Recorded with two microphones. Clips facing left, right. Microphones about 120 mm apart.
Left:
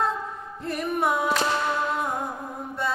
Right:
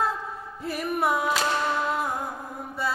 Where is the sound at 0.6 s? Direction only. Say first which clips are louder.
Left 1 dB; 5° right (ahead or behind).